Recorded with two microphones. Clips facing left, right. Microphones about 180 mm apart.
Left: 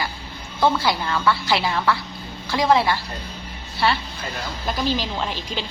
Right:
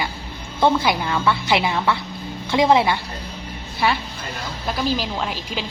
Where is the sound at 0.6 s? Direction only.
20° right (ahead or behind).